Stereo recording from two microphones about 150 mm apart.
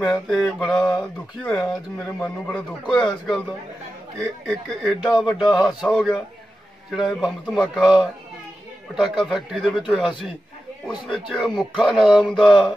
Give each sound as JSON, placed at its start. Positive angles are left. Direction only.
{"t": 0.0, "sound": "speech", "side_deg": 5}
{"t": 11.1, "sound": "speech", "side_deg": 0}